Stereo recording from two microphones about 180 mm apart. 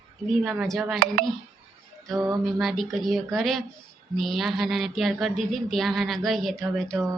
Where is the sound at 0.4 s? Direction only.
5° right (ahead or behind).